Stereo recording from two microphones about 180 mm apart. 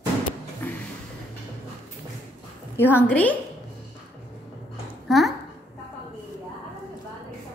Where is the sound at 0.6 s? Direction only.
10° left (ahead or behind).